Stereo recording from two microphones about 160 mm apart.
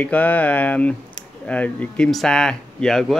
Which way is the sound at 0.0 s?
10° left (ahead or behind).